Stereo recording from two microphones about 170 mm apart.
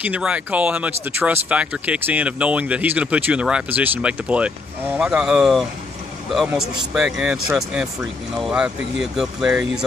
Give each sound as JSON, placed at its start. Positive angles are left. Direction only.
{"t": 0.0, "sound": "speech", "side_deg": -10}